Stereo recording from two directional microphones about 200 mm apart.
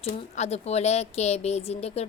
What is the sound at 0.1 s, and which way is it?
A woman's voice, 35° left (ahead or behind).